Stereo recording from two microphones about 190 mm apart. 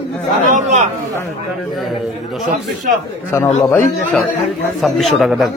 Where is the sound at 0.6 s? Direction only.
40° right (ahead or behind).